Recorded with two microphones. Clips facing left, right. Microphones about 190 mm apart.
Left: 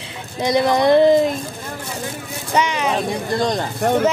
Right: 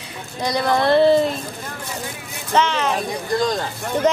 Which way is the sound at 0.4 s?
20° left (ahead or behind).